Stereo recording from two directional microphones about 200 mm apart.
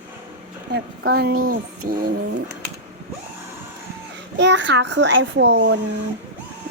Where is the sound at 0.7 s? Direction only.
50° right (ahead or behind).